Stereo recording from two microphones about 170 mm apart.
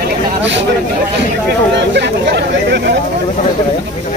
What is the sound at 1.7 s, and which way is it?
Speech, 90° right.